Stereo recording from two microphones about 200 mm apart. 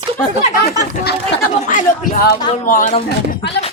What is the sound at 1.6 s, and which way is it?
Speech, 40° left (ahead or behind).